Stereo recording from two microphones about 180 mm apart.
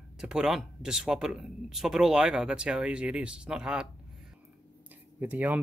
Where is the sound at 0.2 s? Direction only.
5° right (ahead or behind).